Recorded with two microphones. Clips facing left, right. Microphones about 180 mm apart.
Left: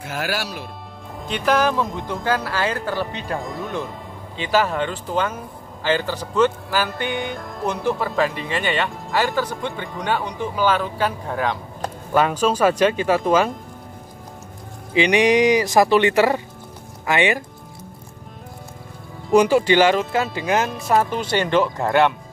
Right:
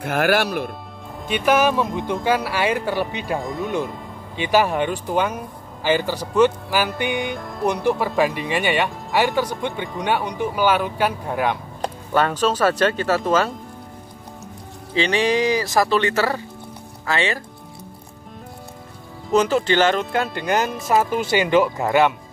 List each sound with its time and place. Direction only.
0.0 s speech: 60° right (ahead or behind)
1.2 s speech: 5° right (ahead or behind)
3.3 s speech: centre (ahead or behind)
3.6 s speech: 15° right (ahead or behind)
12.1 s speech: 10° left (ahead or behind)
15.0 s speech: 15° left (ahead or behind)
19.3 s speech: 10° left (ahead or behind)